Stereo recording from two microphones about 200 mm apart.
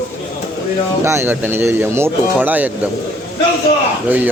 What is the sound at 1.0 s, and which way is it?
Speech, 10° right (ahead or behind).